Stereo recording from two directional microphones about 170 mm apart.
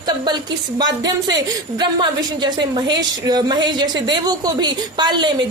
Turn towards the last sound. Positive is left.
turn(degrees=-25)  # may be behind; listen again after turning